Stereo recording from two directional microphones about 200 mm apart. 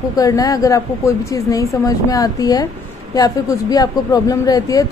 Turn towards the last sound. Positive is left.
turn(degrees=20)  # may be behind; listen again after turning